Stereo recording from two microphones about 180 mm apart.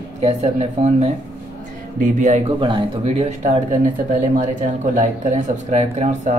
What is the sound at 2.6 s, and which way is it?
Speech, 30° right (ahead or behind).